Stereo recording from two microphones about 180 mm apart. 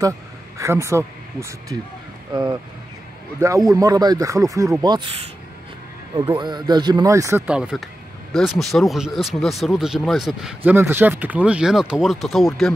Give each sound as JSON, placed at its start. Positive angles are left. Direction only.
{"t": 0.6, "sound": "speech", "side_deg": -15}
{"t": 3.3, "sound": "speech", "side_deg": -20}
{"t": 6.3, "sound": "speech", "side_deg": -25}
{"t": 7.4, "sound": "speech", "side_deg": -5}